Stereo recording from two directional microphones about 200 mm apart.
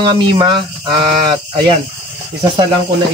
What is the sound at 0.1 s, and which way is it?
Speech, 25° right (ahead or behind).